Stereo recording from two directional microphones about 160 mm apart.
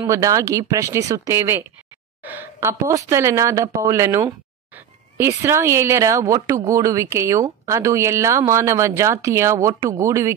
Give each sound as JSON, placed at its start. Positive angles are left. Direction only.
{"t": 0.1, "sound": "speech", "side_deg": -20}